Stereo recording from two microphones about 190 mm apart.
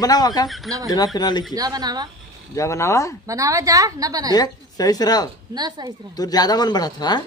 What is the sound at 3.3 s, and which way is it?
A woman's voice, 15° right (ahead or behind).